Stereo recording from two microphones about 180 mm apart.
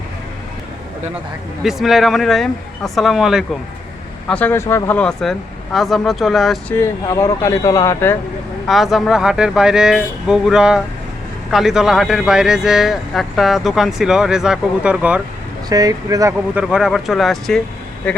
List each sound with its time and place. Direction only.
1.6 s speech: centre (ahead or behind)
4.3 s speech: 10° left (ahead or behind)
6.7 s speech: 15° left (ahead or behind)
8.6 s speech: centre (ahead or behind)
15.7 s speech: 20° right (ahead or behind)
16.6 s speech: centre (ahead or behind)